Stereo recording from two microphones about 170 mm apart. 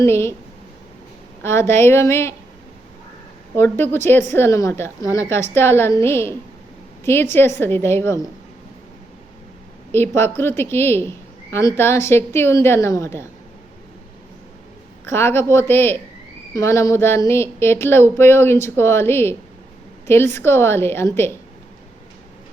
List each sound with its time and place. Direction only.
0.0 s a woman's voice: 15° left (ahead or behind)
1.4 s a woman's voice: 15° left (ahead or behind)
3.5 s a woman's voice: 15° left (ahead or behind)
9.9 s a woman's voice: 15° left (ahead or behind)
15.0 s a woman's voice: 15° left (ahead or behind)